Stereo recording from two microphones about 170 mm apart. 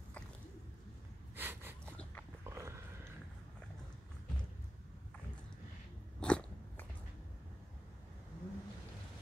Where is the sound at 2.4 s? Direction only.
15° right (ahead or behind).